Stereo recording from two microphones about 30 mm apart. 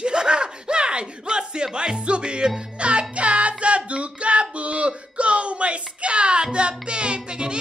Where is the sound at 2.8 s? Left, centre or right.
Right.